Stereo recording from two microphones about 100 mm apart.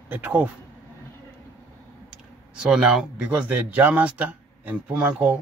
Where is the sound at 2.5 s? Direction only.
10° right (ahead or behind).